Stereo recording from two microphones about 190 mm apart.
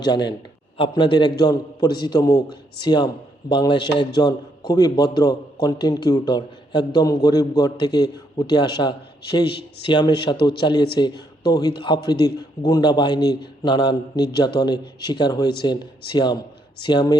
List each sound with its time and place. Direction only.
0.0 s a man's voice: 20° left (ahead or behind)